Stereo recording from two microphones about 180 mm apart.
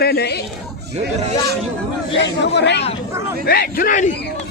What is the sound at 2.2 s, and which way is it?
Speech, 75° left (ahead or behind).